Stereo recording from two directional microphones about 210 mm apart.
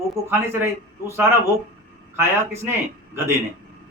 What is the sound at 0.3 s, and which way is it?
A man's voice, 10° right (ahead or behind).